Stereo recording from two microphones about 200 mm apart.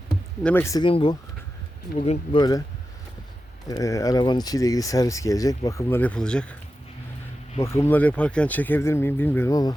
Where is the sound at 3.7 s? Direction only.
15° left (ahead or behind).